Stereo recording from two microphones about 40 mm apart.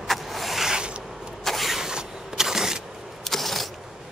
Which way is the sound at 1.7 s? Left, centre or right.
Centre.